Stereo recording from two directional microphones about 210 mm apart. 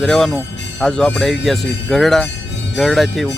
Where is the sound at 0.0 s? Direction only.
Centre (ahead or behind).